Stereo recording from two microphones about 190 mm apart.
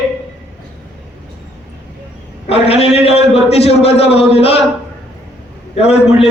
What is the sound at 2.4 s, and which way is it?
A man's voice, 30° left (ahead or behind).